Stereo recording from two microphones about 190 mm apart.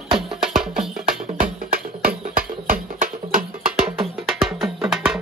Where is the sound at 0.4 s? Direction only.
Centre (ahead or behind).